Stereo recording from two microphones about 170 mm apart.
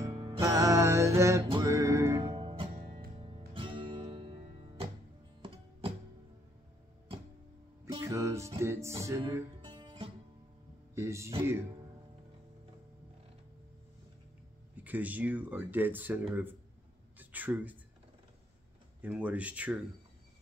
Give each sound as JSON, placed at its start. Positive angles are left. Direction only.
{"t": 0.1, "sound": "music", "side_deg": -25}
{"t": 2.2, "sound": "music", "side_deg": -30}
{"t": 8.0, "sound": "music", "side_deg": -15}
{"t": 9.6, "sound": "music", "side_deg": -25}
{"t": 11.0, "sound": "speech", "side_deg": -15}
{"t": 14.8, "sound": "speech", "side_deg": -10}
{"t": 17.2, "sound": "a sound", "side_deg": -10}
{"t": 18.9, "sound": "speech", "side_deg": -10}